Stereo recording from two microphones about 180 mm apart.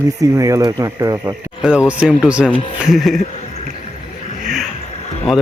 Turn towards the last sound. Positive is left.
turn(degrees=0)  # may be behind; listen again after turning